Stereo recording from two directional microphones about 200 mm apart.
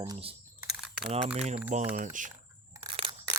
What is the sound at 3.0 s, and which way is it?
Scissors, 25° right (ahead or behind).